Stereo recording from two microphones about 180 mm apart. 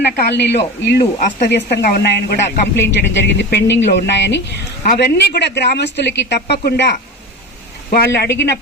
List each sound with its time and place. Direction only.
0.2 s a woman's voice: 70° left (ahead or behind)
4.8 s a woman's voice: 60° left (ahead or behind)